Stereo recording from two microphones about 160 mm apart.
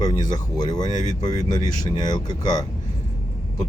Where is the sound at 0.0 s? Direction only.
25° left (ahead or behind).